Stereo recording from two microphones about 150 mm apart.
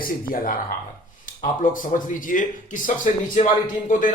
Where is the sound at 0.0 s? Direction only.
70° left (ahead or behind).